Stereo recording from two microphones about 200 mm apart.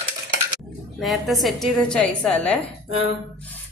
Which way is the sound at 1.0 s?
Centre (ahead or behind).